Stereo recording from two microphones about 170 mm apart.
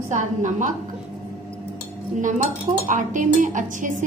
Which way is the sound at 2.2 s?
50° right (ahead or behind).